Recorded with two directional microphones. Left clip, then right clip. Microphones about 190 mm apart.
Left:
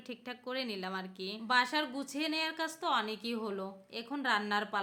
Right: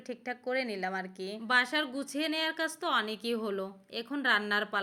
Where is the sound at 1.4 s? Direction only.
20° right (ahead or behind).